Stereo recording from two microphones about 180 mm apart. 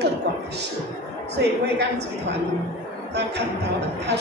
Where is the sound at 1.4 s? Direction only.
65° right (ahead or behind).